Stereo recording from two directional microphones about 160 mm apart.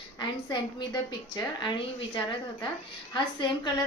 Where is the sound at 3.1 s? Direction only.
25° left (ahead or behind).